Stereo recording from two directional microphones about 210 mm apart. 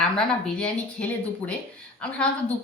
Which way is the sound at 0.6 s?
5° left (ahead or behind).